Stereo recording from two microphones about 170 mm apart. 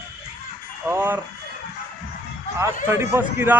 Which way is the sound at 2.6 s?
15° right (ahead or behind).